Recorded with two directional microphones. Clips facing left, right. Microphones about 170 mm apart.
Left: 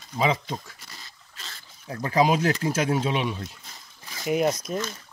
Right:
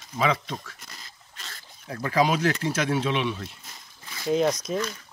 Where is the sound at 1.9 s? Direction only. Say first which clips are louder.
Left 2 dB; 30° left (ahead or behind).